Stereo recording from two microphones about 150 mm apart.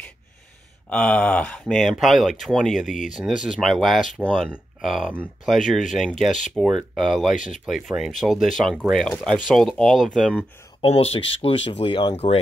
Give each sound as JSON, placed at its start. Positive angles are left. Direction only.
{"t": 0.8, "sound": "speech", "side_deg": 10}
{"t": 7.3, "sound": "speech", "side_deg": 55}
{"t": 7.6, "sound": "speech", "side_deg": -5}
{"t": 10.8, "sound": "speech", "side_deg": 40}